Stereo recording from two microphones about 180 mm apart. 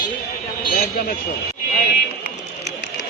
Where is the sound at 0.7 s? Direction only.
55° left (ahead or behind).